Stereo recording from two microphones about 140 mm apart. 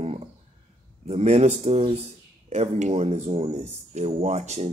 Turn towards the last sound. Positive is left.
turn(degrees=-55)  # may be behind; listen again after turning